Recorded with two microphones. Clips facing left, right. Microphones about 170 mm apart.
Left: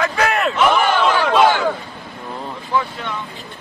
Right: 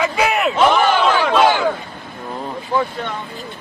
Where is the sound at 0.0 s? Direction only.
10° right (ahead or behind).